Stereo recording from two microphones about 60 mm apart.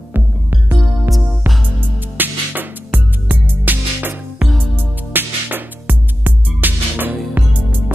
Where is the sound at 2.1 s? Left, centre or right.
Right.